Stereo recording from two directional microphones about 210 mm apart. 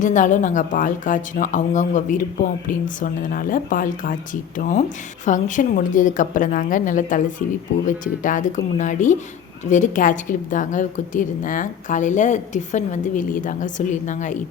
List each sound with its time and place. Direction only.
0.0 s a woman's voice: 35° left (ahead or behind)